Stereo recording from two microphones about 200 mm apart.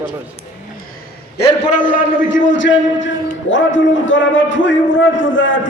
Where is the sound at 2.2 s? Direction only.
70° left (ahead or behind).